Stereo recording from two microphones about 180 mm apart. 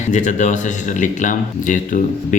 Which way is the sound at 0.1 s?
40° left (ahead or behind).